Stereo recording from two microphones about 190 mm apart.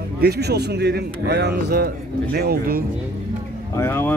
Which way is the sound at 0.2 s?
60° right (ahead or behind).